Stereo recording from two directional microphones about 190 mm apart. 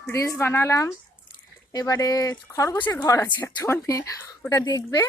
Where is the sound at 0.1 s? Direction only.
15° left (ahead or behind).